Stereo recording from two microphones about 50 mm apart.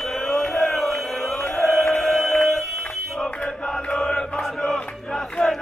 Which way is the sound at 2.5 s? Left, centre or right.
Centre.